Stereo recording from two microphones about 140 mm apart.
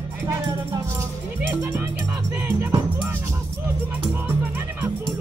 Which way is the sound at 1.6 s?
15° right (ahead or behind).